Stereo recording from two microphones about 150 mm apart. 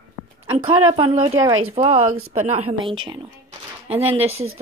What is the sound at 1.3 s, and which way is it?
Speech, 20° right (ahead or behind).